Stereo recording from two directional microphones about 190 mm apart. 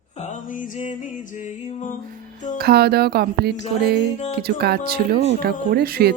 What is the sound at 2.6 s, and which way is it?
Speech, 55° right (ahead or behind).